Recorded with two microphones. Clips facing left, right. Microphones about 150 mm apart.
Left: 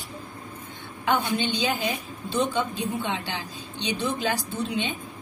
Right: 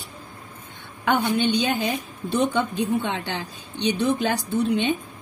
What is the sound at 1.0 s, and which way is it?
A woman's voice, 60° right (ahead or behind).